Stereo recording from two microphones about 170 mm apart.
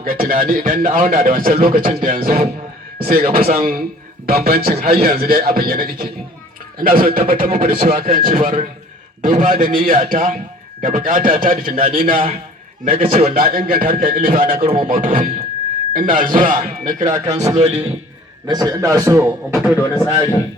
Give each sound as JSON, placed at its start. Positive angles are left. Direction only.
{"t": 0.0, "sound": "speech", "side_deg": -60}
{"t": 7.3, "sound": "speech", "side_deg": -35}
{"t": 7.7, "sound": "speech", "side_deg": -55}
{"t": 18.4, "sound": "a man's voice", "side_deg": -20}